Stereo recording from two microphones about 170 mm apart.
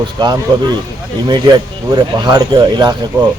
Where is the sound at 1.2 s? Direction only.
25° right (ahead or behind).